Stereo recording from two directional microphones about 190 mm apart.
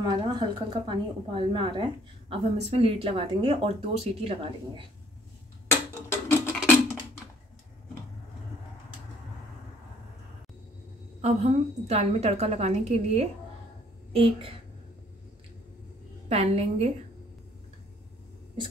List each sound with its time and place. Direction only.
0.0 s a woman's voice: 20° right (ahead or behind)
5.7 s a sound: 15° left (ahead or behind)
11.1 s a woman's voice: 35° right (ahead or behind)
16.3 s a woman's voice: 35° right (ahead or behind)